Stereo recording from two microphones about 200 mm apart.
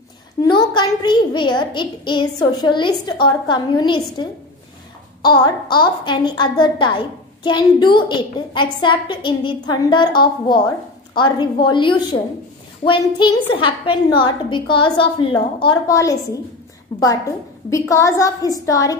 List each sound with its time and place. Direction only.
0.4 s a woman's voice: 20° left (ahead or behind)
17.6 s a woman's voice: 15° left (ahead or behind)